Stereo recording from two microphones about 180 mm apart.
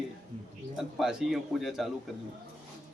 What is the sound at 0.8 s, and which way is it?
A man's voice, centre (ahead or behind).